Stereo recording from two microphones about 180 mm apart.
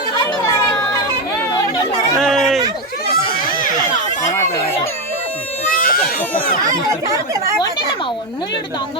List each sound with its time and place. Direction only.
2.1 s a sound: centre (ahead or behind)
3.1 s baby cry: 55° left (ahead or behind)
5.8 s baby cry: 55° left (ahead or behind)